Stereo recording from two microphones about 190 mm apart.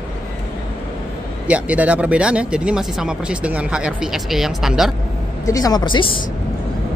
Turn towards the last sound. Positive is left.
turn(degrees=25)  # may be behind; listen again after turning